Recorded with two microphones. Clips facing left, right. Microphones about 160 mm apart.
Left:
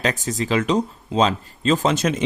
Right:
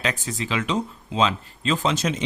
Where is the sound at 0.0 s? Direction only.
40° left (ahead or behind).